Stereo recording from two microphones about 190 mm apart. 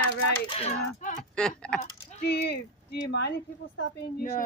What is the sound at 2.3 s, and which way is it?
Speech, 60° left (ahead or behind).